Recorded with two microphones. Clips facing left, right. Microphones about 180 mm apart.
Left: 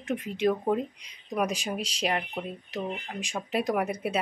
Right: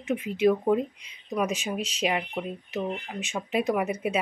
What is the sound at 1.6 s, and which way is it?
Speech, centre (ahead or behind).